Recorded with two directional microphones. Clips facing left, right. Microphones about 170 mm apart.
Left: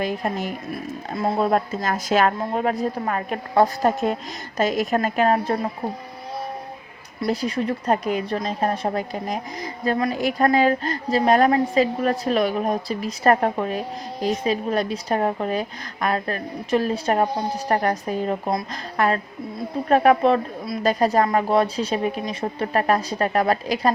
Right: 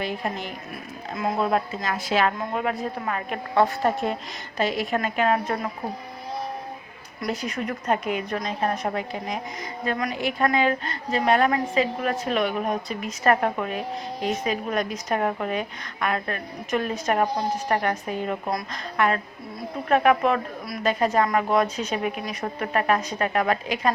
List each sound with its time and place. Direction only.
0.0 s a woman's voice: 45° left (ahead or behind)
7.2 s a woman's voice: 30° left (ahead or behind)